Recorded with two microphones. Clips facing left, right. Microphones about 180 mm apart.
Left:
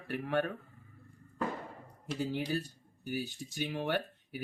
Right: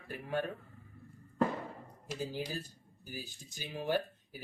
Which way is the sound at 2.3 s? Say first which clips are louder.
Left 5 dB; 65° left (ahead or behind).